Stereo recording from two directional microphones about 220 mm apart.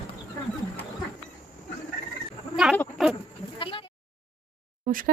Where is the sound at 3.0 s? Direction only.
Centre (ahead or behind).